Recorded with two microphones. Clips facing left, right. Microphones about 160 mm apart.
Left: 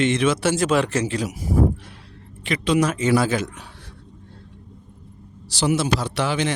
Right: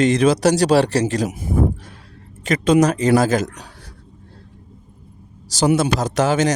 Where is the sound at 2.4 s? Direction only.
45° right (ahead or behind).